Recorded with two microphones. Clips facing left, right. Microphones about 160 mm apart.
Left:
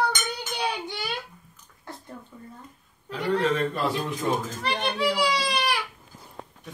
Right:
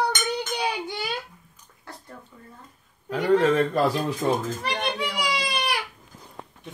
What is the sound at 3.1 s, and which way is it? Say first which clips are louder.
Speech: right 5 dB; 45° right (ahead or behind).